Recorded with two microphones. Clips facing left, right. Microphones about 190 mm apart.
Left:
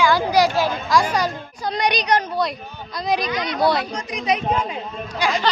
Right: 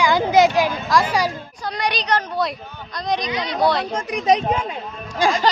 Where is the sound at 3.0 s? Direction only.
5° left (ahead or behind).